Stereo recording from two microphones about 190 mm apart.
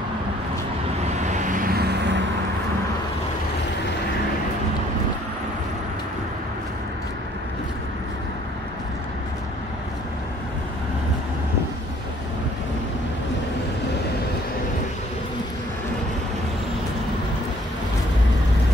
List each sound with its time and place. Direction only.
1.2 s vehicle: 40° right (ahead or behind)